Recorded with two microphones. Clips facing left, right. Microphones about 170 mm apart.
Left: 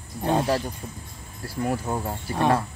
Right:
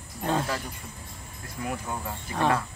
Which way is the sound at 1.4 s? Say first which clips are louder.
Left 7 dB; 35° left (ahead or behind).